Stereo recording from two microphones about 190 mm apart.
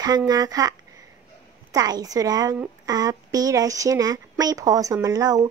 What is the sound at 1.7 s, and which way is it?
A woman's voice, 20° right (ahead or behind).